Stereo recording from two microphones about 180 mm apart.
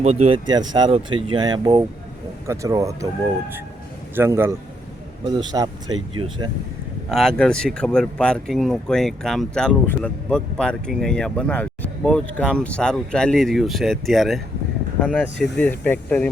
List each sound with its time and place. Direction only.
0.0 s speech: 35° right (ahead or behind); by 3.1 s 15° right (ahead or behind)
4.1 s speech: 10° right (ahead or behind)
5.2 s speech: 25° right (ahead or behind)
7.1 s speech: 5° left (ahead or behind)